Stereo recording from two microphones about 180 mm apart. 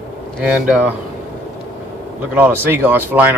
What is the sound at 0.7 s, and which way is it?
Speech, 10° right (ahead or behind).